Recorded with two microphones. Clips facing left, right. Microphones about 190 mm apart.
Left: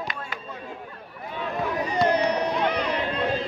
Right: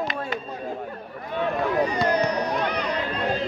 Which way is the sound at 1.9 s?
25° left (ahead or behind).